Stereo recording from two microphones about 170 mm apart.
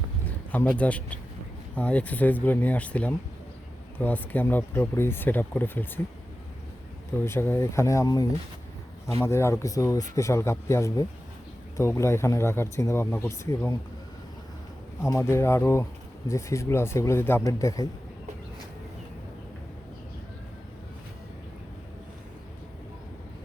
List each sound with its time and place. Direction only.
0.3 s speech: 10° left (ahead or behind)
7.3 s speech: 15° left (ahead or behind)
15.0 s speech: 15° left (ahead or behind)